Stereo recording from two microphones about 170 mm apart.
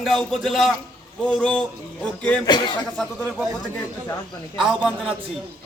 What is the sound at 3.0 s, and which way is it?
Speech, 5° left (ahead or behind).